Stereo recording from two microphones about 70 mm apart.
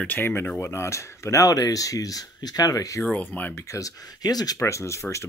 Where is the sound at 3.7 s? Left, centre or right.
Left.